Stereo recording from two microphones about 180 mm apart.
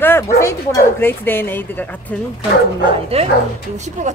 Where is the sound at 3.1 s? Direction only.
35° right (ahead or behind).